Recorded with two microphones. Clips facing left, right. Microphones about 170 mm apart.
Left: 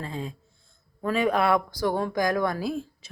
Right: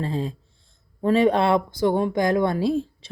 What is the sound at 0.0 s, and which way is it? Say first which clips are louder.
Speech: right 7 dB; 30° right (ahead or behind).